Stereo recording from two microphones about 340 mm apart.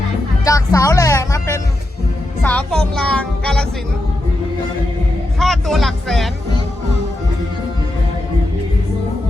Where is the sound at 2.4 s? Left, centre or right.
Centre.